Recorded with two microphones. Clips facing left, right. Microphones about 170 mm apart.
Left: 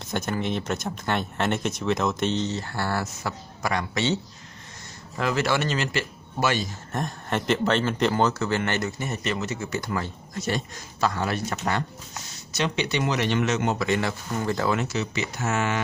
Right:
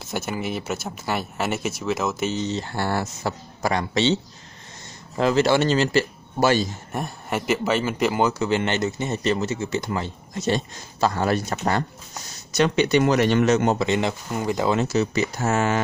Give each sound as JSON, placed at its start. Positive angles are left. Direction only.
{"t": 0.0, "sound": "speech", "side_deg": -5}
{"t": 2.5, "sound": "speech", "side_deg": -20}
{"t": 6.9, "sound": "speech", "side_deg": -10}
{"t": 12.5, "sound": "speech", "side_deg": -50}
{"t": 13.7, "sound": "speech", "side_deg": -20}
{"t": 14.8, "sound": "speech", "side_deg": -40}